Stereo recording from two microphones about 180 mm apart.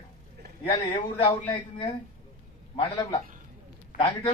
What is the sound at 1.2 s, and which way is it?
Speech, 30° left (ahead or behind).